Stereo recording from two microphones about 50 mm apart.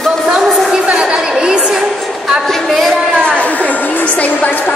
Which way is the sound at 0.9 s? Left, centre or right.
Centre.